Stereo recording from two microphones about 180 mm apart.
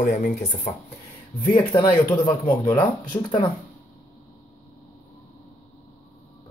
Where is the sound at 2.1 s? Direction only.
10° left (ahead or behind).